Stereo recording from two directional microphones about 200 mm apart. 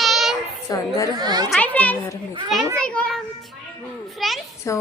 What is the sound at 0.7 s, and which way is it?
Speech, 15° left (ahead or behind).